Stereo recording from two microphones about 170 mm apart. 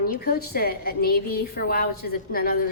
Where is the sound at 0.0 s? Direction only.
60° left (ahead or behind).